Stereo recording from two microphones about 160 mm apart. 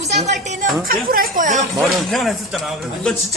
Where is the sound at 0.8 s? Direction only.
65° right (ahead or behind).